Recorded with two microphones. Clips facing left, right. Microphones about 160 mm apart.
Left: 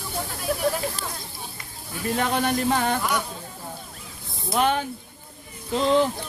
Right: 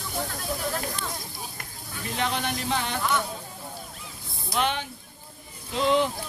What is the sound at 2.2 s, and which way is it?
Speech, 50° left (ahead or behind).